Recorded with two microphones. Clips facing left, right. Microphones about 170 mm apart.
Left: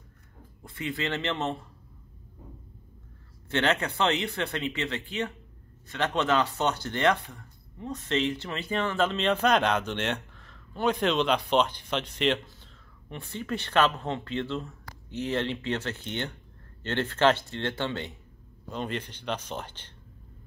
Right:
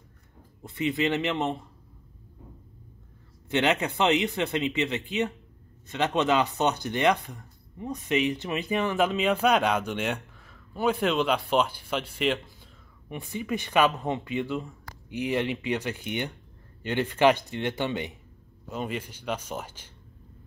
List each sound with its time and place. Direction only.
0.6 s speech: 20° right (ahead or behind)
3.4 s speech: 15° right (ahead or behind)